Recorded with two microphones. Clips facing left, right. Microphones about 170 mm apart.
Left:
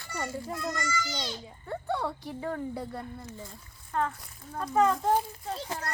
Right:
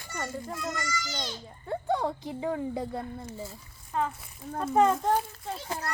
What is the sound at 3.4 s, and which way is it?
A child's voice, 5° right (ahead or behind).